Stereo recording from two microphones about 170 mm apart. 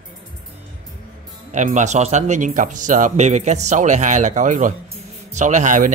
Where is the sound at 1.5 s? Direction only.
45° right (ahead or behind).